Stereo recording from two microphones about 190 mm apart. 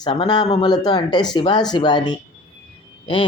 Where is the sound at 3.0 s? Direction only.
25° left (ahead or behind).